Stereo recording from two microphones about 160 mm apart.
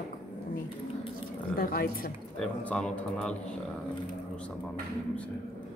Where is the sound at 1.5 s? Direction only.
65° left (ahead or behind).